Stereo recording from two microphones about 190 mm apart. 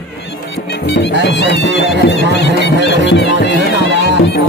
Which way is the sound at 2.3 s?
65° left (ahead or behind).